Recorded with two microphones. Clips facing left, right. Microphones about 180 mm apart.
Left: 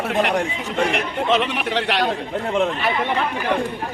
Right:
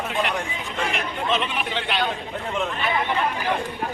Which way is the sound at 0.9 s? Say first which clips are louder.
Left 3 dB; 70° left (ahead or behind).